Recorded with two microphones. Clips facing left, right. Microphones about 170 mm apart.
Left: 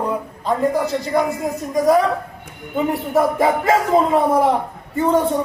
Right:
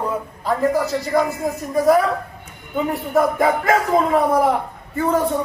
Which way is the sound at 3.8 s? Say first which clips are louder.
Left 1 dB; centre (ahead or behind).